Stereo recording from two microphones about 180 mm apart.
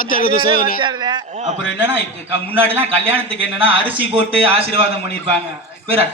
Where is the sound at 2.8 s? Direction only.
30° right (ahead or behind).